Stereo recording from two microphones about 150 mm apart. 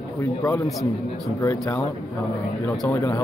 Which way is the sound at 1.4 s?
20° left (ahead or behind).